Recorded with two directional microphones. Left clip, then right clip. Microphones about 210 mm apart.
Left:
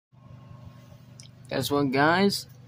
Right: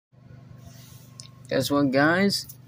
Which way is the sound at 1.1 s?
5° right (ahead or behind).